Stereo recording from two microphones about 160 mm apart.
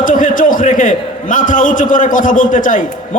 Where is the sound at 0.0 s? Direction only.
55° left (ahead or behind).